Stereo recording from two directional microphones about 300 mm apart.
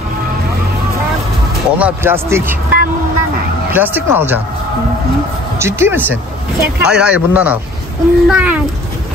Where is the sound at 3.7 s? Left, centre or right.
Centre.